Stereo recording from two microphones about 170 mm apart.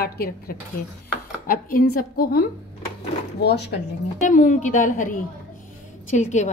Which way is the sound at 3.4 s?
80° left.